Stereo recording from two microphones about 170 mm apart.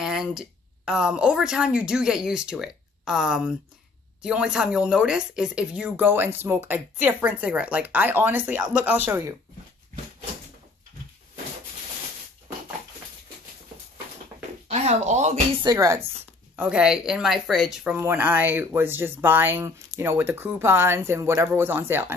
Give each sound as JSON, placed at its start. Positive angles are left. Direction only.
{"t": 0.0, "sound": "a woman's voice", "side_deg": -5}
{"t": 14.7, "sound": "speech", "side_deg": -40}
{"t": 15.6, "sound": "speech", "side_deg": -20}
{"t": 16.5, "sound": "speech", "side_deg": -5}